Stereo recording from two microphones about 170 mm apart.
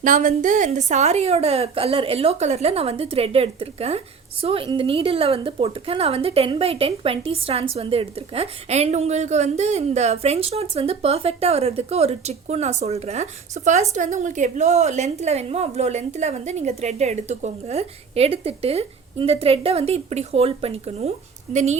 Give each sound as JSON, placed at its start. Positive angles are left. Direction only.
{"t": 0.0, "sound": "a woman's voice", "side_deg": -50}